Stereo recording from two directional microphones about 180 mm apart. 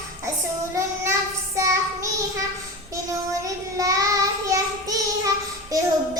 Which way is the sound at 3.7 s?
20° right (ahead or behind).